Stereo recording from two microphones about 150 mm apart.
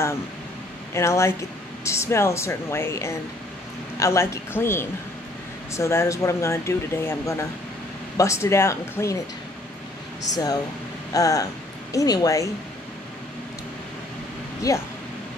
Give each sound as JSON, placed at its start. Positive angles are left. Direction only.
{"t": 0.9, "sound": "speech", "side_deg": 20}
{"t": 10.3, "sound": "speech", "side_deg": 25}
{"t": 14.7, "sound": "speech", "side_deg": 20}